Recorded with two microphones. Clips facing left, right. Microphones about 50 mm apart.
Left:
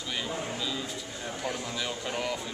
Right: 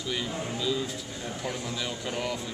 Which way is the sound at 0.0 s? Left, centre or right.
Centre.